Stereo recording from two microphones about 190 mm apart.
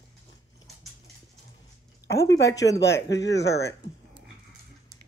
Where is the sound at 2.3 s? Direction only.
65° left (ahead or behind).